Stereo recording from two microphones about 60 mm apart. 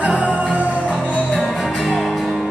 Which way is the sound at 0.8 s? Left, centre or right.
Left.